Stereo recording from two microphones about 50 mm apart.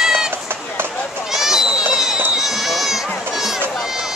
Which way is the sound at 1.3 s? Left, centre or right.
Centre.